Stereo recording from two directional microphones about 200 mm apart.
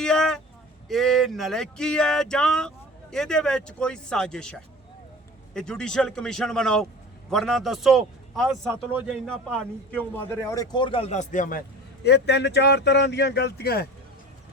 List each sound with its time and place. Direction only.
0.0 s vehicle: 5° left (ahead or behind)
0.9 s a man's voice: centre (ahead or behind); by 11.6 s 40° left (ahead or behind)
12.0 s speech: 60° left (ahead or behind)